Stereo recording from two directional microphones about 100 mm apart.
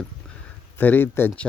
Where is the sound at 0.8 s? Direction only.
20° left (ahead or behind).